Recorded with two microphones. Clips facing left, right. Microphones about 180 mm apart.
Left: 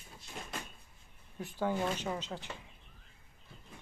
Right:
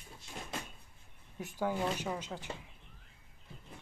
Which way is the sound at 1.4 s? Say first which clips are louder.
Left 1 dB; 15° right (ahead or behind).